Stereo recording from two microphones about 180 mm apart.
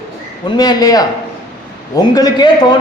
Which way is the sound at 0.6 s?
20° left (ahead or behind).